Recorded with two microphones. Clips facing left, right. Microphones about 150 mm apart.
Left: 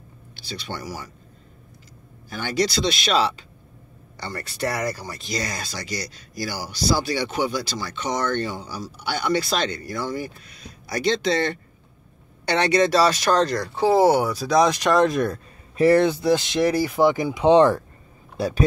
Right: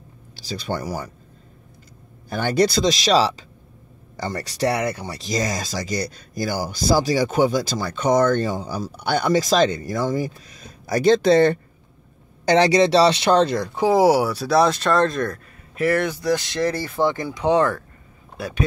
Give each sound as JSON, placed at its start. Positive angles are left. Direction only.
{"t": 0.5, "sound": "speech", "side_deg": -45}
{"t": 2.3, "sound": "speech", "side_deg": -55}
{"t": 2.9, "sound": "speech", "side_deg": -35}
{"t": 12.4, "sound": "speech", "side_deg": -30}
{"t": 14.7, "sound": "speech", "side_deg": 10}
{"t": 15.8, "sound": "speech", "side_deg": 30}